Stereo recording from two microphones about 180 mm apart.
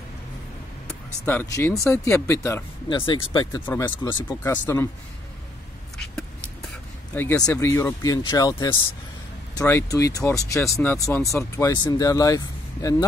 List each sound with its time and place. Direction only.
0.8 s speech: 10° left (ahead or behind)
3.0 s speech: 25° left (ahead or behind)
3.5 s speech: 15° left (ahead or behind)
4.4 s speech: 15° left (ahead or behind)
7.2 s speech: 10° left (ahead or behind)